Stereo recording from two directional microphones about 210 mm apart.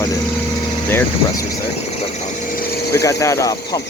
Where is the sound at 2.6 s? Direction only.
45° left (ahead or behind).